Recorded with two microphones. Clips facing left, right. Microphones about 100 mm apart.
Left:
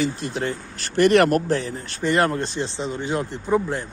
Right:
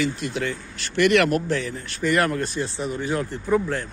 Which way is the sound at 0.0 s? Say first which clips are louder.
Left 1 dB; 35° left (ahead or behind).